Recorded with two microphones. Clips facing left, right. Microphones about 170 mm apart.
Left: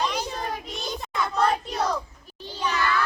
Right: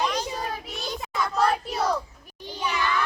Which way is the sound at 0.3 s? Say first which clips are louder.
Even; 10° right (ahead or behind).